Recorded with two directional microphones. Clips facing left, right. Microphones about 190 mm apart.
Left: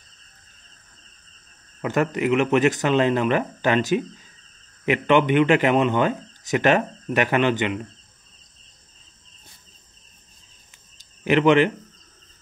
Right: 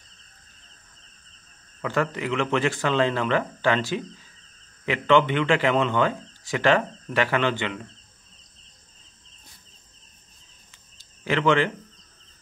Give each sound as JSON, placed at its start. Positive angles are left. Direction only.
{"t": 1.8, "sound": "speech", "side_deg": 15}
{"t": 11.2, "sound": "speech", "side_deg": 20}